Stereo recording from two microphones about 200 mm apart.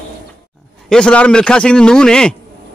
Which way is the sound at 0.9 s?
5° left (ahead or behind).